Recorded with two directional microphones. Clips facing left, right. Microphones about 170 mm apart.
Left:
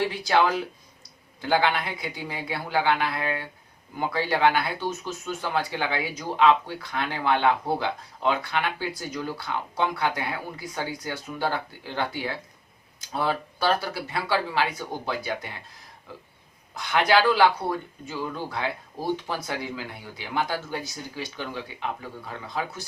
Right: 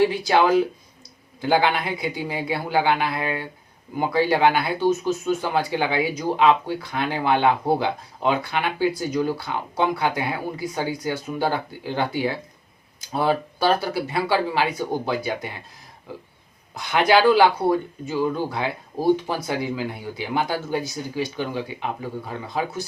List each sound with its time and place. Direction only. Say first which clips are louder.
0.1 s speech: right 5 dB; 15° right (ahead or behind)
16.7 s speech: right 3 dB; 15° right (ahead or behind)